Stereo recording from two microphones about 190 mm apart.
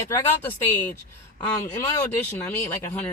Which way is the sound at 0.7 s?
10° left (ahead or behind).